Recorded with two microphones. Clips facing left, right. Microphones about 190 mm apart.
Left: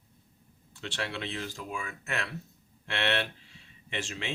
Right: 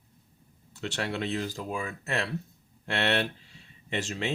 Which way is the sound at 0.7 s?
40° right (ahead or behind).